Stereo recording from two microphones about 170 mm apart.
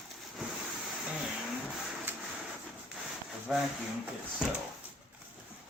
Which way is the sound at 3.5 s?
5° right (ahead or behind).